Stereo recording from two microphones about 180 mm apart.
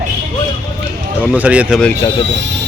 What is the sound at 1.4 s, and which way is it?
Speech, 5° right (ahead or behind).